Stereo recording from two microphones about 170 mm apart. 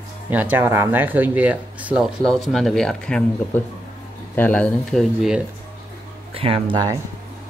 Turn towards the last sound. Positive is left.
turn(degrees=-25)  # may be behind; listen again after turning